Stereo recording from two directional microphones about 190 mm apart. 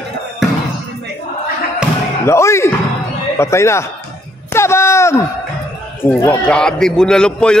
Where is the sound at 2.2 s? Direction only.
15° left (ahead or behind).